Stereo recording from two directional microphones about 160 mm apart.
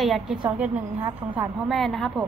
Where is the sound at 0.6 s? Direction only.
15° right (ahead or behind).